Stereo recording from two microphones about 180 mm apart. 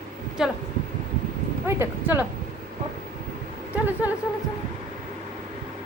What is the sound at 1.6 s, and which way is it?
Speech, 15° right (ahead or behind).